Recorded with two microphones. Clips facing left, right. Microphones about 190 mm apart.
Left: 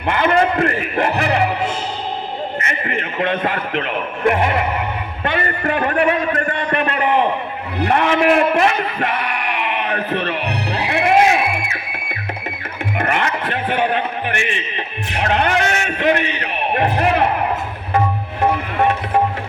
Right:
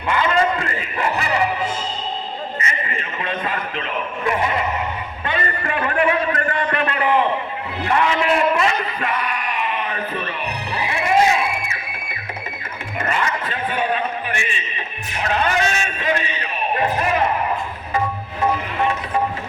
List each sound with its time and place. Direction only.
0.1 s music: 60° left (ahead or behind)
2.6 s speech: 65° left (ahead or behind)
5.2 s a sound: 65° left (ahead or behind)
7.9 s a sound: 60° left (ahead or behind)
13.0 s music: 65° left (ahead or behind)
15.1 s a man's voice: 65° left (ahead or behind)
18.8 s music: 60° left (ahead or behind)